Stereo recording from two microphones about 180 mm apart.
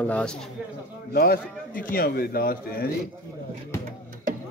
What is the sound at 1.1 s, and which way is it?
A man's voice, 60° left (ahead or behind).